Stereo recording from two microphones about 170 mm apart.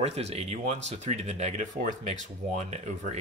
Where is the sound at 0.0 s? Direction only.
40° right (ahead or behind).